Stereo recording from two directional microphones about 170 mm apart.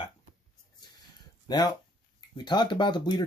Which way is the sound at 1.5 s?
25° left (ahead or behind).